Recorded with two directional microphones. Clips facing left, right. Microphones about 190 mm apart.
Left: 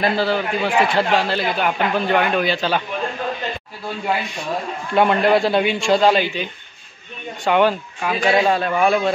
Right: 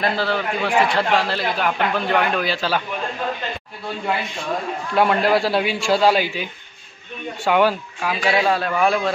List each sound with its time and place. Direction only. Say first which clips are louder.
0.0 s a man's voice: left 3 dB; centre (ahead or behind)
4.9 s a man's voice: left 2 dB; centre (ahead or behind)